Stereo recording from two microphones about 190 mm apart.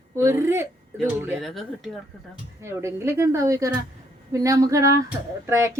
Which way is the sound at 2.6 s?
15° right (ahead or behind).